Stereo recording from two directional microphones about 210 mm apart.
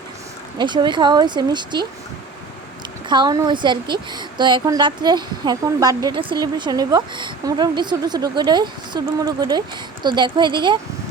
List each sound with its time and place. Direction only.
0.6 s a woman's voice: 20° right (ahead or behind)
3.1 s a woman's voice: 20° right (ahead or behind)